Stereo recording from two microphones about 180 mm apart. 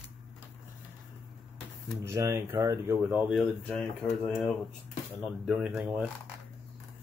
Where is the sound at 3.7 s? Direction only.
10° left (ahead or behind).